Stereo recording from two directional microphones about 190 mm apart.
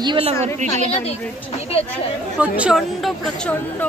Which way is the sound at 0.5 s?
35° right (ahead or behind).